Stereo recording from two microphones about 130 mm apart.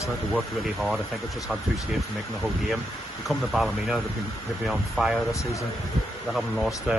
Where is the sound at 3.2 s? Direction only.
Centre (ahead or behind).